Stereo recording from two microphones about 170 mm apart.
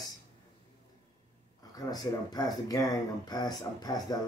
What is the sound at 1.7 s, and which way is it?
Speech, 20° left (ahead or behind).